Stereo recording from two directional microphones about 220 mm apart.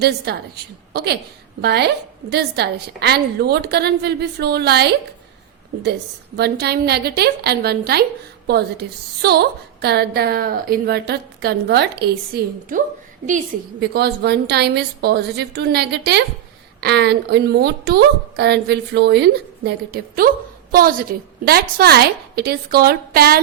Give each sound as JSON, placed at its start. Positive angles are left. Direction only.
{"t": 0.0, "sound": "a woman's voice", "side_deg": -45}
{"t": 6.3, "sound": "a woman's voice", "side_deg": -45}